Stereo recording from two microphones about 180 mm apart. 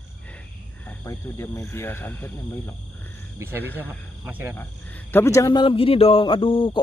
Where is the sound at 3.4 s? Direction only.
10° right (ahead or behind).